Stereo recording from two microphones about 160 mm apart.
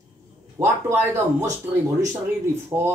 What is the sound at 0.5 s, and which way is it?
Speech, 15° right (ahead or behind).